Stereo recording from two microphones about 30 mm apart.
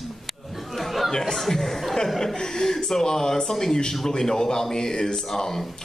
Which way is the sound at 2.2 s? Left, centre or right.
Centre.